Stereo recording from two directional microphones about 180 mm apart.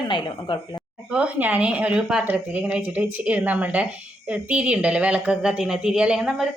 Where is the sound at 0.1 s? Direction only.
25° left (ahead or behind).